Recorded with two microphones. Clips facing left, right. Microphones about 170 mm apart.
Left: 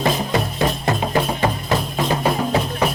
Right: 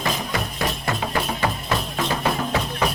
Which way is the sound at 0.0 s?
30° left (ahead or behind).